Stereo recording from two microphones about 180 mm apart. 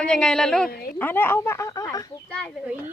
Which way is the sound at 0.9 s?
10° left (ahead or behind).